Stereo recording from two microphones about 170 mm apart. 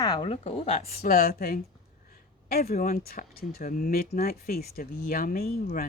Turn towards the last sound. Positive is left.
turn(degrees=60)  # may be behind; listen again after turning